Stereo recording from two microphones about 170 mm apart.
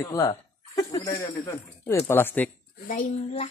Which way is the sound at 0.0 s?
20° left (ahead or behind).